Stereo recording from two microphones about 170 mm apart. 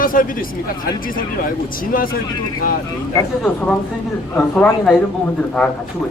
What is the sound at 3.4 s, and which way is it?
Speech, 5° left (ahead or behind).